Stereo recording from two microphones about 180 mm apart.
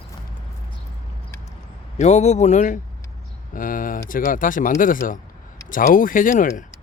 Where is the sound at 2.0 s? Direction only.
40° left (ahead or behind).